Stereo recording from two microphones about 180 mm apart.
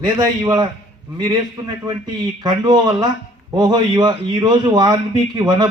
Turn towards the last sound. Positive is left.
turn(degrees=-25)  # may be behind; listen again after turning